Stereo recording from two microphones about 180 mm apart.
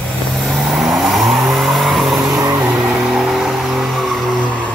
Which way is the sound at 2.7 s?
Centre (ahead or behind).